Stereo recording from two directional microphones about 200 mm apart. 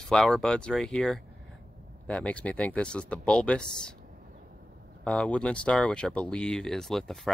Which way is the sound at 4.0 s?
45° right (ahead or behind).